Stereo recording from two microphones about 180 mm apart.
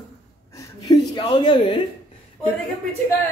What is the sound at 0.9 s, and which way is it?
Speech, 25° left (ahead or behind).